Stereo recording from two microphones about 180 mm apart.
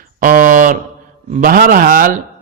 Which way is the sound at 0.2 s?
50° right (ahead or behind).